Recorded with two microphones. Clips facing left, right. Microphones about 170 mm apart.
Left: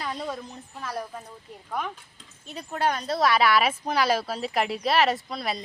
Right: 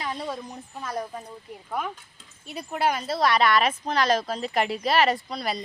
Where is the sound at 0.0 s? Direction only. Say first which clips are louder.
Right 1 dB; 5° right (ahead or behind).